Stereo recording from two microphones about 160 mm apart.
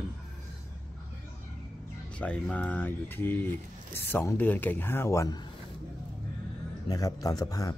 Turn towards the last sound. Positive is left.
turn(degrees=20)  # may be behind; listen again after turning